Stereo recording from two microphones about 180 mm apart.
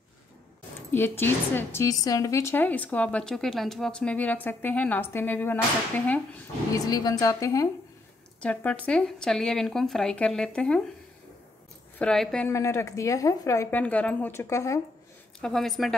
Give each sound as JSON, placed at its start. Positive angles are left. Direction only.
{"t": 0.9, "sound": "a woman's voice", "side_deg": 10}
{"t": 6.7, "sound": "a woman's voice", "side_deg": 20}
{"t": 8.4, "sound": "speech", "side_deg": 10}
{"t": 12.0, "sound": "speech", "side_deg": 5}
{"t": 12.4, "sound": "a woman's voice", "side_deg": 15}
{"t": 15.4, "sound": "speech", "side_deg": 0}